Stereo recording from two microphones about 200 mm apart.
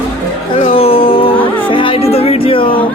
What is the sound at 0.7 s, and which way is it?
Music, 30° left (ahead or behind).